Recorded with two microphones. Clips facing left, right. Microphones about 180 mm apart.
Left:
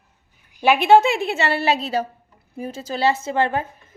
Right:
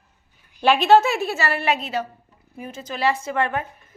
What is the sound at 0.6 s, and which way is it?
A woman's voice, 10° left (ahead or behind).